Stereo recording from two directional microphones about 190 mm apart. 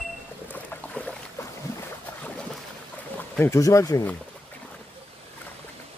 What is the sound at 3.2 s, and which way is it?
Speech, 15° left (ahead or behind).